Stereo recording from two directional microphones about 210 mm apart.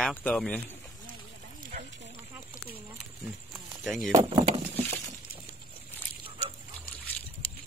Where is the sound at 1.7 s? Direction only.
35° right (ahead or behind).